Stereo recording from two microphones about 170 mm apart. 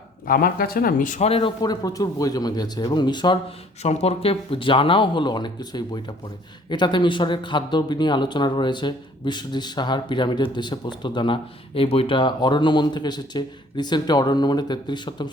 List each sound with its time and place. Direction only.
0.3 s speech: 60° left (ahead or behind)
1.3 s speech: 30° left (ahead or behind)
3.8 s speech: 40° left (ahead or behind)